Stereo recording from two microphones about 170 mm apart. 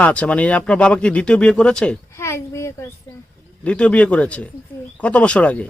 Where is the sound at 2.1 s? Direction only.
15° left (ahead or behind).